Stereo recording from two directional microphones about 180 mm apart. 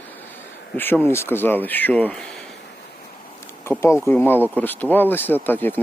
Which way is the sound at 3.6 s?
15° left (ahead or behind).